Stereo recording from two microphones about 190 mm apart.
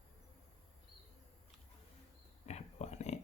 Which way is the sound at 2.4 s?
35° left (ahead or behind).